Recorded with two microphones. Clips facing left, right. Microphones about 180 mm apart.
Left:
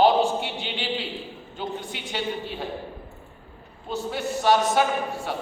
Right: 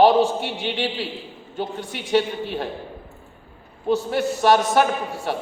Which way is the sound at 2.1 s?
70° right (ahead or behind).